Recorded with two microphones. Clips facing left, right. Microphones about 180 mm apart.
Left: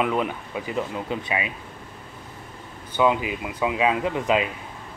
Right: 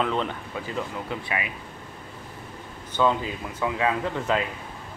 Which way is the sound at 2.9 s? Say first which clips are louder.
Left 2 dB; 15° left (ahead or behind).